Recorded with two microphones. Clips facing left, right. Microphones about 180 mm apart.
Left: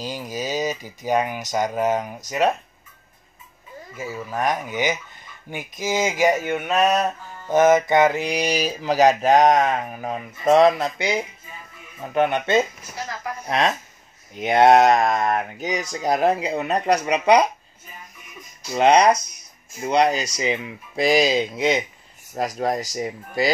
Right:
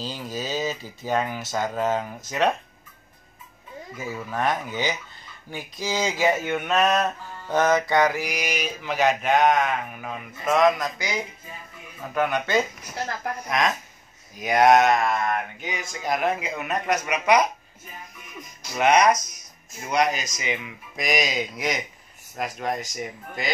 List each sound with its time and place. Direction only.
0.0 s speech: 15° left (ahead or behind)
4.1 s speech: 10° left (ahead or behind); by 17.5 s 30° left (ahead or behind)
18.8 s speech: 30° left (ahead or behind)
22.3 s speech: 35° left (ahead or behind)